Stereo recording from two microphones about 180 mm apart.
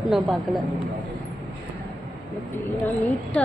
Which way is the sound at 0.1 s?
Centre (ahead or behind).